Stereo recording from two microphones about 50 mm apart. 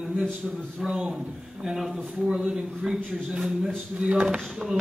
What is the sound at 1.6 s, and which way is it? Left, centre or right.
A man's voice, centre.